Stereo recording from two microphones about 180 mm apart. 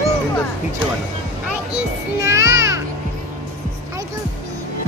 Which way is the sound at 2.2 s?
15° right (ahead or behind).